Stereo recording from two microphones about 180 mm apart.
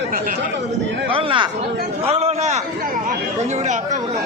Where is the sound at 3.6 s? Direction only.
45° right (ahead or behind).